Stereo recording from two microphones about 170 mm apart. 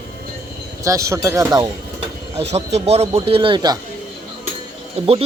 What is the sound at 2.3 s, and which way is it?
Speech, 40° right (ahead or behind).